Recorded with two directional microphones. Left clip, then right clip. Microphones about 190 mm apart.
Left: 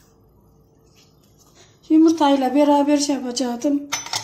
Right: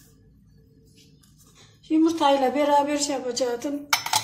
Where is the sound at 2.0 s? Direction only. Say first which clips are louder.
Left 4 dB; 50° left (ahead or behind).